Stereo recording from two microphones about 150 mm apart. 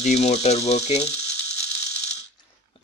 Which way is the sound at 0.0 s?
50° left (ahead or behind).